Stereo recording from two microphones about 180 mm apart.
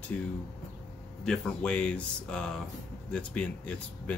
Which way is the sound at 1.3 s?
5° left (ahead or behind).